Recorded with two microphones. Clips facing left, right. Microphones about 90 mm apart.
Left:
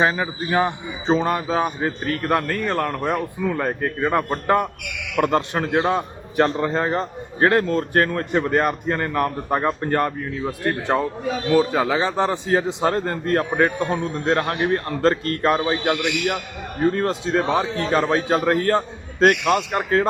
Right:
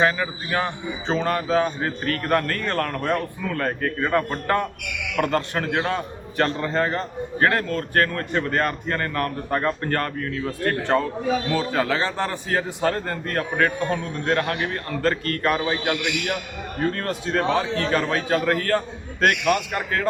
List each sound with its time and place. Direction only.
0.0 s a man's voice: 20° left (ahead or behind)